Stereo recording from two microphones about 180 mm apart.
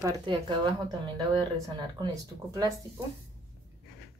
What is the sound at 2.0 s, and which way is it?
Speech, 20° right (ahead or behind).